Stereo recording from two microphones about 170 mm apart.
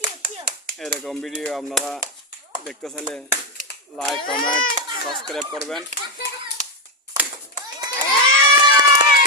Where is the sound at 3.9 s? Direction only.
Centre (ahead or behind).